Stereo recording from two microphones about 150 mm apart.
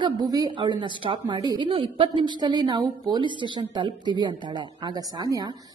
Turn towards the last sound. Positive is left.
turn(degrees=-25)  # may be behind; listen again after turning